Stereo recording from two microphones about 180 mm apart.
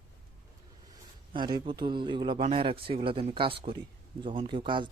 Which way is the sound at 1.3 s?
25° right (ahead or behind).